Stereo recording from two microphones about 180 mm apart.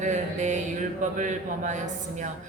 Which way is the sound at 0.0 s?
40° right (ahead or behind).